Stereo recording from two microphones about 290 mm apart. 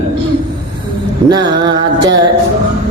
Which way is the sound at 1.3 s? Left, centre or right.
Centre.